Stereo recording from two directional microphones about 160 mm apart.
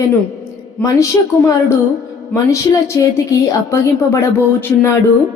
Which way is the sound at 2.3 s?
20° left (ahead or behind).